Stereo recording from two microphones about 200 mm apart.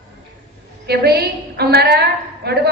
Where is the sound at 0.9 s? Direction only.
55° right (ahead or behind).